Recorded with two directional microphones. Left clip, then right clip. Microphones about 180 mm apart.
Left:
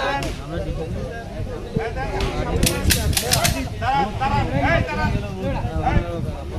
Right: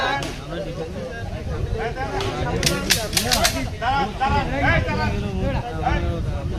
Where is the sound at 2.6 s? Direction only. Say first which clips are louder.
Right 1 dB; 15° left (ahead or behind).